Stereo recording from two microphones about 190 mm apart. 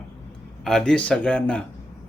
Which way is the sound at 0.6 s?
5° left (ahead or behind).